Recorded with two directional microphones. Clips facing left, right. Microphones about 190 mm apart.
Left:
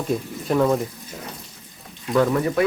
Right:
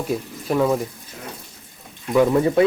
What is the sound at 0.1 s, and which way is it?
Speech, 5° right (ahead or behind).